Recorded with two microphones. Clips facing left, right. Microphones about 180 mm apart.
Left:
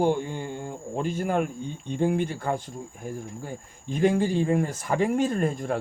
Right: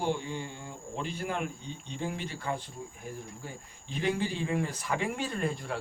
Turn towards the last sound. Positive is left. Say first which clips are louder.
# left 8 dB
turn(degrees=45)  # may be behind; listen again after turning